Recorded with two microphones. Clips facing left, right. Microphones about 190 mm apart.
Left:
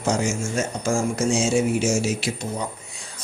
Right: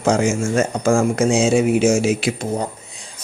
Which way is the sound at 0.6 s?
55° right (ahead or behind).